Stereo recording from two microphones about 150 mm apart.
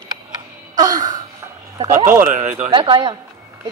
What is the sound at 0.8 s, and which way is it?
A man's voice, 25° right (ahead or behind).